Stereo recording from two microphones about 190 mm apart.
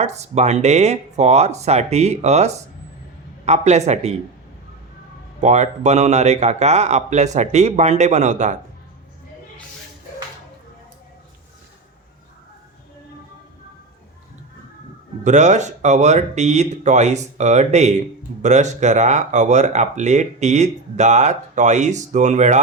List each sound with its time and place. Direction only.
0.0 s speech: 35° right (ahead or behind)
5.4 s speech: 40° right (ahead or behind)
15.2 s speech: 40° right (ahead or behind)